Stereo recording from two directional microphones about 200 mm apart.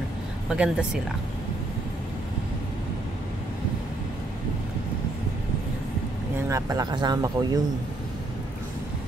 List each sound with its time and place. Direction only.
0.5 s speech: 5° right (ahead or behind)
6.5 s speech: 20° right (ahead or behind)